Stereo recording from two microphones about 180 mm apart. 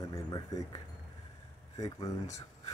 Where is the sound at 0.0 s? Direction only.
20° left (ahead or behind).